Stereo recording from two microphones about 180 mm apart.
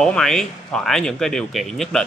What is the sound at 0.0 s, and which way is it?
Speech, 5° left (ahead or behind).